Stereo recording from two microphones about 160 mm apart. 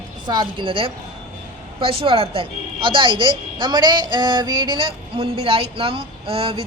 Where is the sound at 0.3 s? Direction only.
30° right (ahead or behind).